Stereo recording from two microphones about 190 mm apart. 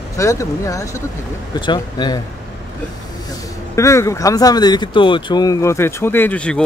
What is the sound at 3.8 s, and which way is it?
Speech, 15° left (ahead or behind).